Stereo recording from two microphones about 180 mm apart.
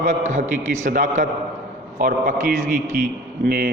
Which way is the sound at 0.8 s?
45° right (ahead or behind).